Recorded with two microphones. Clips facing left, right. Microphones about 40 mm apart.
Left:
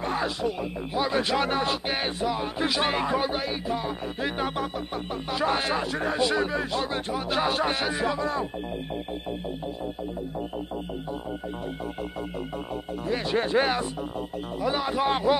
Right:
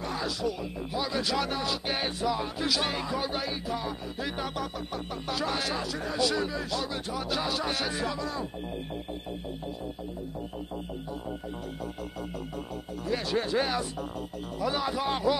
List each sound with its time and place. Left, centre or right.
0.0 s speech: left
1.9 s speech: left
7.8 s speech: left
13.1 s speech: left
14.6 s speech: centre
15.0 s speech: left